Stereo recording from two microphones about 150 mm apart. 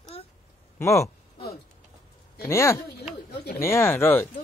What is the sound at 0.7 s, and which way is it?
Speech, 20° left (ahead or behind).